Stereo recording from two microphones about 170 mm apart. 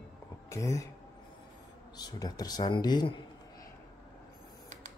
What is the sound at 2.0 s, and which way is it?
Speech, 25° left (ahead or behind).